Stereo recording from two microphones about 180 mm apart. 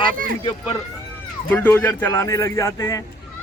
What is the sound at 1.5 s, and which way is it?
A man's voice, 10° left (ahead or behind).